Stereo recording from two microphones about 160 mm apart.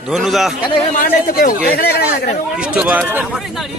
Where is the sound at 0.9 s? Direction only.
65° left (ahead or behind).